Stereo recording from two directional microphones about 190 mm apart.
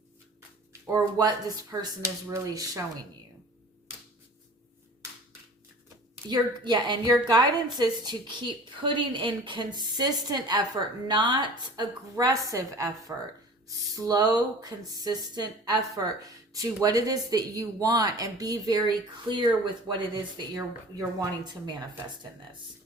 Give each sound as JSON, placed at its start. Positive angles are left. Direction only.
{"t": 0.7, "sound": "a sound", "side_deg": -15}
{"t": 1.2, "sound": "a woman's voice", "side_deg": -20}
{"t": 6.2, "sound": "a woman's voice", "side_deg": -20}